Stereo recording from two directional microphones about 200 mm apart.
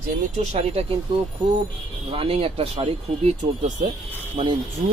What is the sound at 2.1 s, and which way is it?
Speech, 30° right (ahead or behind).